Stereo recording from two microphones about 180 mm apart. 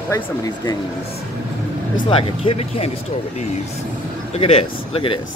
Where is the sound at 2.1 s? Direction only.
30° left (ahead or behind).